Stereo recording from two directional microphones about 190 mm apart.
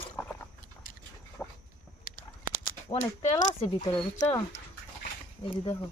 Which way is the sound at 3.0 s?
40° left (ahead or behind).